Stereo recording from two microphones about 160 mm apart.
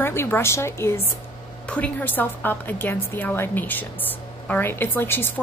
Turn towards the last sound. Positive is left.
turn(degrees=15)  # may be behind; listen again after turning